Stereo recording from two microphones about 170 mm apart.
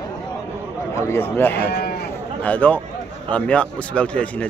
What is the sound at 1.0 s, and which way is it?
Speech, 15° left (ahead or behind).